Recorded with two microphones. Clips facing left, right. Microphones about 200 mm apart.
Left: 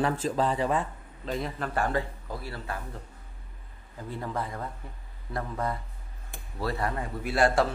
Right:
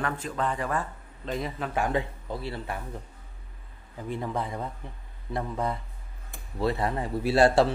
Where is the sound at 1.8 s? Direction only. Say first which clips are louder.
Right 1 dB; 20° right (ahead or behind).